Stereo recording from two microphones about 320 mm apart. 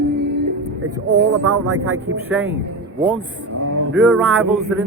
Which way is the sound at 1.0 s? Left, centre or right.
Centre.